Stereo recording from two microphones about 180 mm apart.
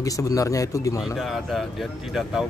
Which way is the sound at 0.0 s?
20° left (ahead or behind).